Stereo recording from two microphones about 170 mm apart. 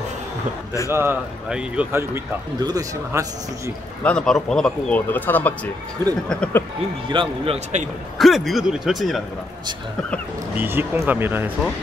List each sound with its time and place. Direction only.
0.8 s a man's voice: 15° right (ahead or behind)
4.0 s a man's voice: 5° left (ahead or behind)
7.1 s a man's voice: 30° right (ahead or behind)
8.2 s speech: centre (ahead or behind)
10.6 s a man's voice: 10° right (ahead or behind)